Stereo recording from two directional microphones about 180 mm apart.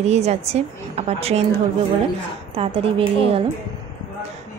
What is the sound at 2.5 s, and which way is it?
Speech, 30° right (ahead or behind).